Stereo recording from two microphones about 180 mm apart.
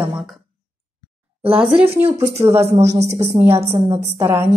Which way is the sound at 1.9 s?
15° right (ahead or behind).